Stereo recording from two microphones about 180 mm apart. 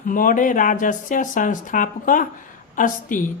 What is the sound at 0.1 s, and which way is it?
Speech, 50° left (ahead or behind).